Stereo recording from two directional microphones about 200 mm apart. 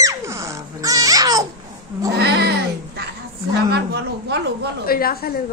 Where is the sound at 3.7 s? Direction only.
55° right (ahead or behind).